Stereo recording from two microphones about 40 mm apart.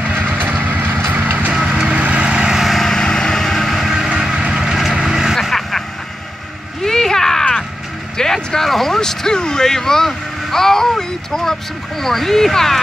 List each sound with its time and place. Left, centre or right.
0.1 s vehicle: right
1.5 s vehicle: right
2.5 s lawn mower: centre
2.8 s vehicle: centre
4.1 s vehicle: centre
5.4 s vehicle: centre
6.8 s a sound: centre
8.2 s vehicle: centre
12.0 s speech: centre